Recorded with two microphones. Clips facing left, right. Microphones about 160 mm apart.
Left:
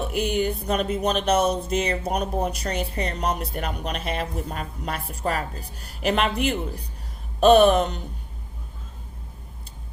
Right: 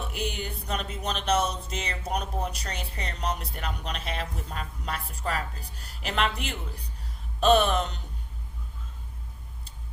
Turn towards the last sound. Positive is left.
turn(degrees=50)  # may be behind; listen again after turning